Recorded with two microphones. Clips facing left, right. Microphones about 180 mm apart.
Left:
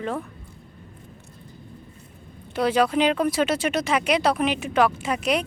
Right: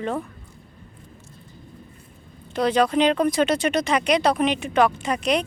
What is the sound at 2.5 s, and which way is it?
A woman's voice, 5° left (ahead or behind).